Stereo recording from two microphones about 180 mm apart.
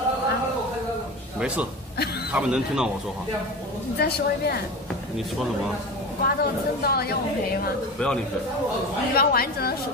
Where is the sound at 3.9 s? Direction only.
60° left (ahead or behind).